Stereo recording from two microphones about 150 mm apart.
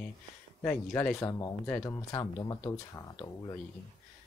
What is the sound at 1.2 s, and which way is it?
Speech, 20° left (ahead or behind).